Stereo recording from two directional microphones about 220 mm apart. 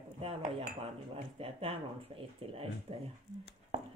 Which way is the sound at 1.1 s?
25° right (ahead or behind).